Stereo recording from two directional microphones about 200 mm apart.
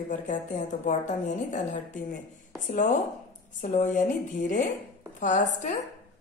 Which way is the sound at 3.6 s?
40° left (ahead or behind).